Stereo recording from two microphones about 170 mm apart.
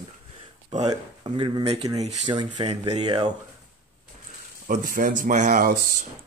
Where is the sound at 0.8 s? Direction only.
25° right (ahead or behind).